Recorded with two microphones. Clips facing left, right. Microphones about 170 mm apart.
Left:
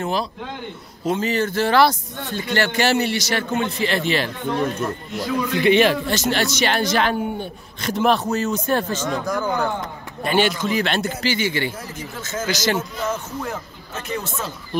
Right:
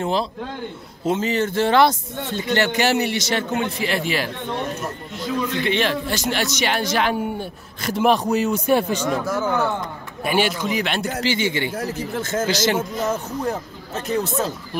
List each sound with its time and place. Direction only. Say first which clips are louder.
0.0 s speech: right 2 dB; 25° right (ahead or behind); by 4.3 s 10° right (ahead or behind)
5.6 s a man's voice: left 8 dB; 10° left (ahead or behind)
6.0 s speech: left 2 dB; 10° right (ahead or behind)
11.7 s speech: right 8 dB; 70° right (ahead or behind)
12.1 s a man's voice: right 4 dB; 55° right (ahead or behind)
12.4 s speech: left 2 dB; 30° right (ahead or behind)